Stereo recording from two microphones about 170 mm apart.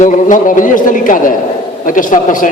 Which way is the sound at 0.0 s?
45° left (ahead or behind).